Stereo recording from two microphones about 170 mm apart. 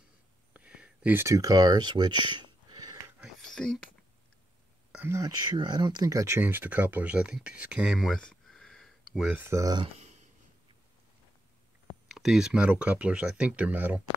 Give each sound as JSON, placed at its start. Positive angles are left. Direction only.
{"t": 0.5, "sound": "a sound", "side_deg": -5}
{"t": 3.2, "sound": "whispering", "side_deg": 0}
{"t": 4.9, "sound": "speech", "side_deg": -15}
{"t": 9.3, "sound": "speech", "side_deg": -15}
{"t": 9.9, "sound": "a sound", "side_deg": -40}
{"t": 12.1, "sound": "speech", "side_deg": 0}